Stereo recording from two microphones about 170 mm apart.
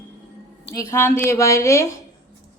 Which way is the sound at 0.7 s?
15° left (ahead or behind).